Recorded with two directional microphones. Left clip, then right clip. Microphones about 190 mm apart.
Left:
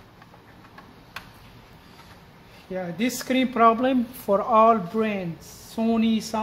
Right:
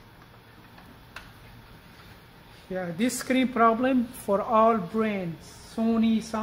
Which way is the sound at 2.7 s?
20° right (ahead or behind).